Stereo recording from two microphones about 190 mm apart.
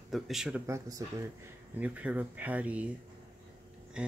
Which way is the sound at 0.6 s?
15° right (ahead or behind).